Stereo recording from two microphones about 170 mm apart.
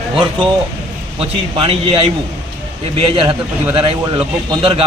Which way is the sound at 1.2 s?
35° right (ahead or behind).